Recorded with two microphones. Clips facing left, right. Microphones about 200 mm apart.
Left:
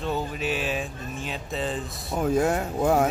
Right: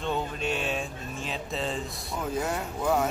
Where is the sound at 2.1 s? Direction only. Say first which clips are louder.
Left 7 dB; 50° left (ahead or behind).